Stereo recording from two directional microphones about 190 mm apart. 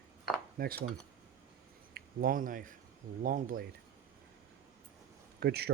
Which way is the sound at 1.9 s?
45° right (ahead or behind).